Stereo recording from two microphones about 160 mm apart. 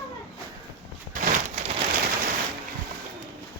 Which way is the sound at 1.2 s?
50° right (ahead or behind).